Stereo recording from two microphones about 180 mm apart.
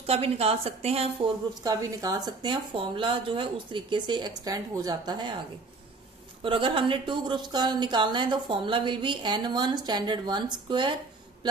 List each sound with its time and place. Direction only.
0.0 s a woman's voice: 35° right (ahead or behind)
1.6 s speech: 20° right (ahead or behind)
6.4 s speech: 30° right (ahead or behind)